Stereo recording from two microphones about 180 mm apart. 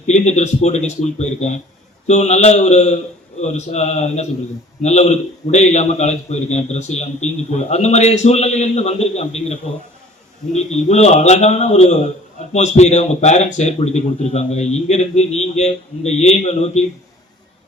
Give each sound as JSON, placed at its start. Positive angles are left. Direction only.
{"t": 0.1, "sound": "a man's voice", "side_deg": 40}